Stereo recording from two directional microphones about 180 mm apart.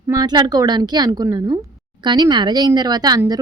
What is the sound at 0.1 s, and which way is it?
A woman's voice, 25° right (ahead or behind).